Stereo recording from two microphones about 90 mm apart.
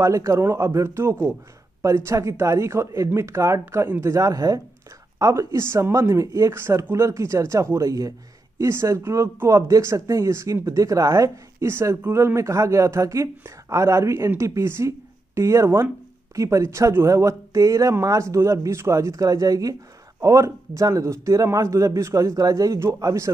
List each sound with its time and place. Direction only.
0.0 s speech: 35° right (ahead or behind)